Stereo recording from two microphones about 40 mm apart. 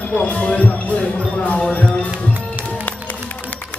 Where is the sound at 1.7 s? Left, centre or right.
Left.